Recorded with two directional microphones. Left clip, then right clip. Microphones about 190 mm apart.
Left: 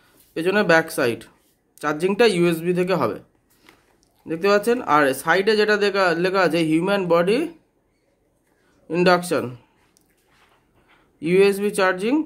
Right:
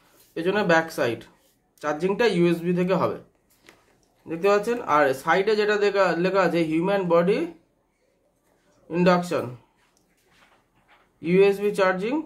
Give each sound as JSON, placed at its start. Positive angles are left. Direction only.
{"t": 0.3, "sound": "speech", "side_deg": 55}
{"t": 4.3, "sound": "speech", "side_deg": 55}
{"t": 8.8, "sound": "speech", "side_deg": 55}
{"t": 11.1, "sound": "speech", "side_deg": 55}